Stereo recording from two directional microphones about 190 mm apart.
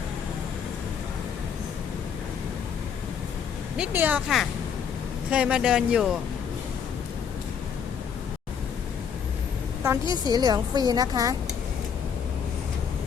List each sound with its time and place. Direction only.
3.8 s speech: 10° right (ahead or behind)
9.8 s a woman's voice: 15° right (ahead or behind)